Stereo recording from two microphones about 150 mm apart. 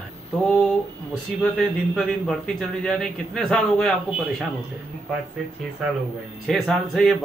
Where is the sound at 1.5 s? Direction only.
5° left (ahead or behind).